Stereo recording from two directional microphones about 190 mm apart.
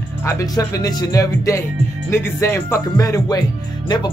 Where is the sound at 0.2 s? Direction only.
15° left (ahead or behind).